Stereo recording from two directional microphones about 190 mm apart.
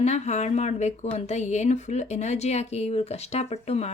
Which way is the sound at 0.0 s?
35° left (ahead or behind).